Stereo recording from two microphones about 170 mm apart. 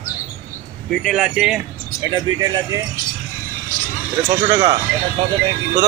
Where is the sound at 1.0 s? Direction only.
5° right (ahead or behind).